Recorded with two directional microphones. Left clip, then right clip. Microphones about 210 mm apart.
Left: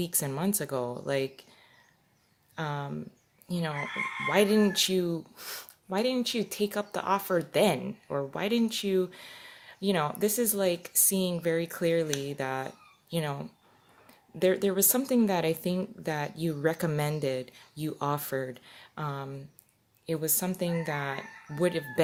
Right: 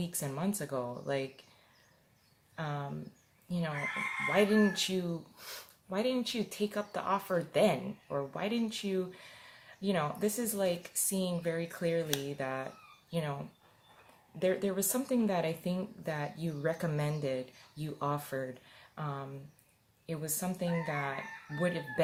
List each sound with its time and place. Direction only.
0.0 s speech: 45° left (ahead or behind)
2.6 s speech: 45° left (ahead or behind)